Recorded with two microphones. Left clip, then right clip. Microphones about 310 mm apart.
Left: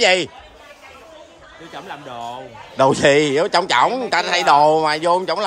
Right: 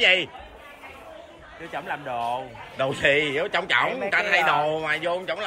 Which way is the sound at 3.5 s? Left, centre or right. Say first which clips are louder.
Left 6 dB; centre.